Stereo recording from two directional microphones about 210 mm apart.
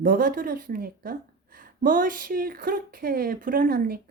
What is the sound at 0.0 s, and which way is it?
A woman's voice, 40° right (ahead or behind).